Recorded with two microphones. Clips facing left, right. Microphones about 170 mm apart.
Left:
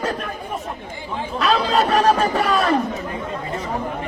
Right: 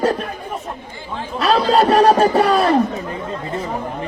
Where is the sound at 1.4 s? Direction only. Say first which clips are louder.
Right 4 dB; 35° right (ahead or behind).